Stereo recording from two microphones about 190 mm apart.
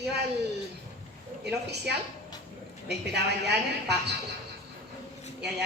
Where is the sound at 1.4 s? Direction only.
60° right (ahead or behind).